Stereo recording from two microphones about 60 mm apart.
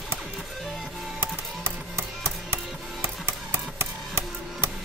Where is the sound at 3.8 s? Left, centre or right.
Right.